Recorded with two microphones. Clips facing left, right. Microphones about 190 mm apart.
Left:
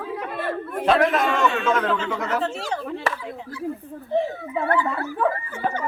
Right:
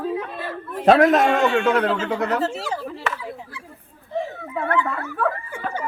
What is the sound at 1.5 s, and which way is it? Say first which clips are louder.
Speech: right 4 dB; 65° right (ahead or behind).